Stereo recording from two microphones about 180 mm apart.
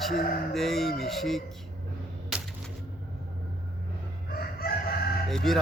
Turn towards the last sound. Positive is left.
turn(degrees=0)  # may be behind; listen again after turning